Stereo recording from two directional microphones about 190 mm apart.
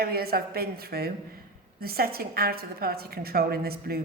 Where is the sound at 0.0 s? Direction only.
55° right (ahead or behind).